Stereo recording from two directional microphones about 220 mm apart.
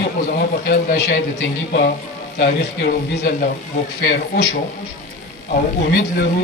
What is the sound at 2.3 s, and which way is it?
A man's voice, 45° left (ahead or behind).